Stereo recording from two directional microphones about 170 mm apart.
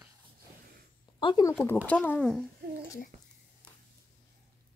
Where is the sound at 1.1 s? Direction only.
25° left (ahead or behind).